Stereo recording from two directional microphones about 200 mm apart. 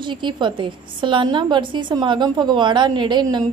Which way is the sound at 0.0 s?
25° right (ahead or behind).